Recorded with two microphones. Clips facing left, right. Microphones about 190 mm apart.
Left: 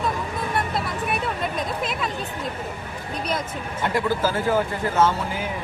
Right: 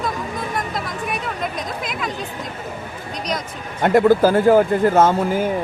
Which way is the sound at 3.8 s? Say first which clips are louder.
Right 10 dB; 50° right (ahead or behind).